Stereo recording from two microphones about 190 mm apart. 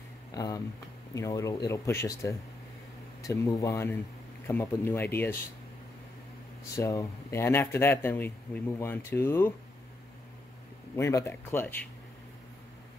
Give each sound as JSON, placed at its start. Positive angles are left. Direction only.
{"t": 0.3, "sound": "a sound", "side_deg": 20}
{"t": 1.1, "sound": "speech", "side_deg": 15}
{"t": 6.7, "sound": "speech", "side_deg": 15}
{"t": 11.0, "sound": "speech", "side_deg": 15}